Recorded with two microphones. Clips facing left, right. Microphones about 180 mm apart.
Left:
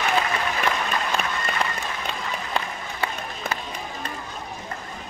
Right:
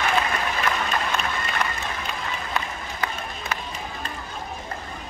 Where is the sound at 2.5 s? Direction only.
30° left (ahead or behind).